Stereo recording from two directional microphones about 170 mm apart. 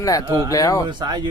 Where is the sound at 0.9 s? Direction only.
25° right (ahead or behind).